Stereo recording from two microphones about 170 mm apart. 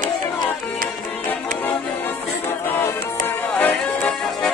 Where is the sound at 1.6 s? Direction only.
10° left (ahead or behind).